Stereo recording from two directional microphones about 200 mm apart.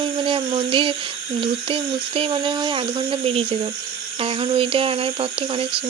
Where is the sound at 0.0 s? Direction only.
25° right (ahead or behind).